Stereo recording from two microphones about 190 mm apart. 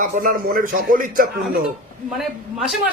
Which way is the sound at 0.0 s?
45° right (ahead or behind).